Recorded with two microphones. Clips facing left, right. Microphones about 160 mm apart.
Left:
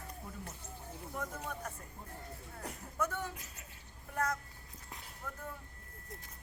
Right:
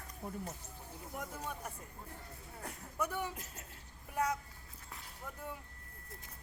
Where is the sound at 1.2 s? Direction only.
10° right (ahead or behind).